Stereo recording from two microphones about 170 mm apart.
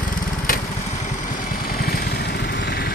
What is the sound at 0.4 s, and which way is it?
Vehicle, 50° left (ahead or behind).